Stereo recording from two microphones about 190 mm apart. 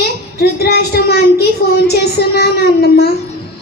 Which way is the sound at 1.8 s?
55° left (ahead or behind).